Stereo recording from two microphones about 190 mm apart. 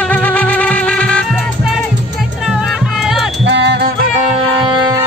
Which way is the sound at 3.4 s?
70° right (ahead or behind).